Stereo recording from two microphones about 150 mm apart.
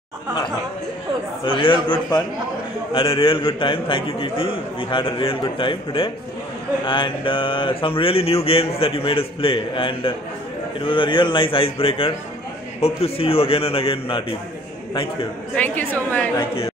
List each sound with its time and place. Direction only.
1.4 s a man's voice: 35° left (ahead or behind)
15.5 s a woman's voice: 10° left (ahead or behind)
16.3 s a man's voice: 40° left (ahead or behind)